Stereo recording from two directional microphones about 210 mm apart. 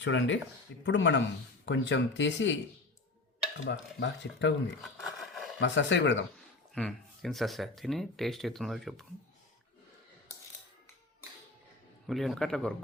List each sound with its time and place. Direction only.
0.0 s speech: 60° left (ahead or behind)
3.7 s speech: 60° left (ahead or behind)
4.8 s roaring cats: centre (ahead or behind)
5.5 s speech: 60° left (ahead or behind)
6.7 s speech: 5° left (ahead or behind)
12.0 s speech: centre (ahead or behind)